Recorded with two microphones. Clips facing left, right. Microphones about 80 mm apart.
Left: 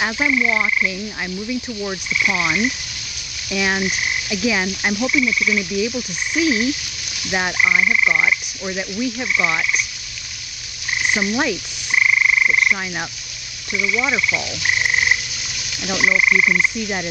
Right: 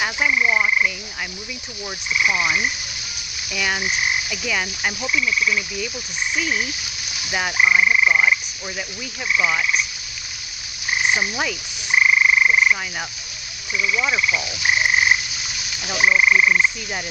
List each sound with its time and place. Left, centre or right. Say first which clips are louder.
0.3 s croak: right 1 dB; right
2.1 s frog: even; centre
8.6 s frog: left 9 dB; centre
11.0 s croak: left 2 dB; centre
12.0 s frog: right 1 dB; centre
13.7 s frog: left 1 dB; centre